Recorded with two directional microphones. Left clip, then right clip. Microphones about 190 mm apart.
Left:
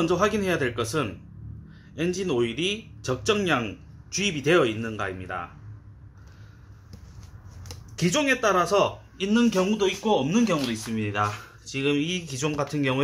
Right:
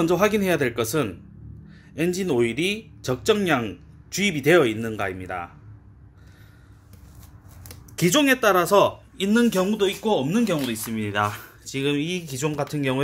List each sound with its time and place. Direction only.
0.0 s speech: 35° right (ahead or behind)
7.9 s speech: 45° right (ahead or behind); by 13.0 s 15° right (ahead or behind)